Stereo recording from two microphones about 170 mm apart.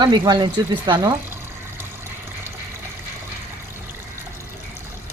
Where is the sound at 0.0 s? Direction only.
25° right (ahead or behind).